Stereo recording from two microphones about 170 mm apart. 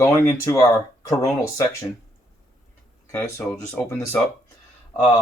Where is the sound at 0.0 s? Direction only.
20° left (ahead or behind).